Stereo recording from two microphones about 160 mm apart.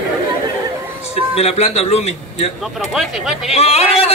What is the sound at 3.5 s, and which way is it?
Speech, 40° left (ahead or behind).